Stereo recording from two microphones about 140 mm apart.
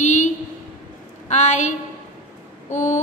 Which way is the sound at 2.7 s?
60° left (ahead or behind).